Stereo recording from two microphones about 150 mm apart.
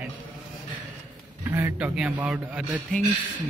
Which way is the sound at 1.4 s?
15° right (ahead or behind).